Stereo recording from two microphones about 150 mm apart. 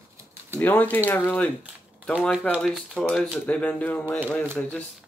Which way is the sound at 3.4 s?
10° left (ahead or behind).